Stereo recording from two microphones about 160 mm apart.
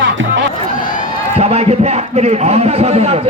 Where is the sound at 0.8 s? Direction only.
55° left (ahead or behind).